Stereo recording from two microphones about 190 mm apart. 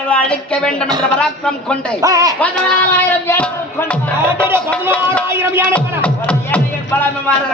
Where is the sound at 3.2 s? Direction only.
10° left (ahead or behind).